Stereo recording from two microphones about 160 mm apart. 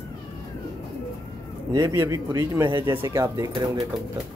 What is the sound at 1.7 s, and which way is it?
Speech, 20° right (ahead or behind).